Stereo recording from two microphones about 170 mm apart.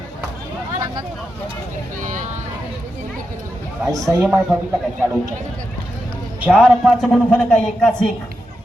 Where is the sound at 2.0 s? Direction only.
45° right (ahead or behind).